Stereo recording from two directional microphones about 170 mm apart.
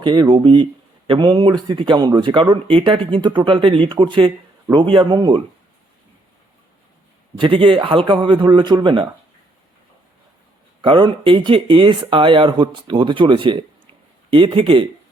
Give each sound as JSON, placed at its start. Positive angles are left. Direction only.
{"t": 0.0, "sound": "speech", "side_deg": -25}
{"t": 7.3, "sound": "speech", "side_deg": -30}
{"t": 10.8, "sound": "speech", "side_deg": -30}